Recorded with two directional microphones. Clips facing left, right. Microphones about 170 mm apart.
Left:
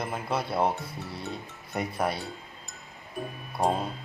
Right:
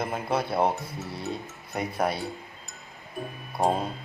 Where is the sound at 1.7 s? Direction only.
5° right (ahead or behind).